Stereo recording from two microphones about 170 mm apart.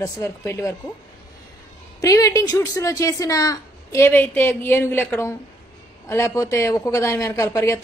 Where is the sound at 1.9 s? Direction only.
20° left (ahead or behind).